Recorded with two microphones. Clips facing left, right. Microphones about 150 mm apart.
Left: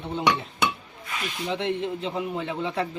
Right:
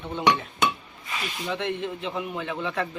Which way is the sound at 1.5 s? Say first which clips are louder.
Left 2 dB; 30° left (ahead or behind).